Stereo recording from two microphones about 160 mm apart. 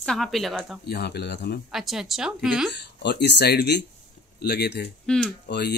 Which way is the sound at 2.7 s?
90° left.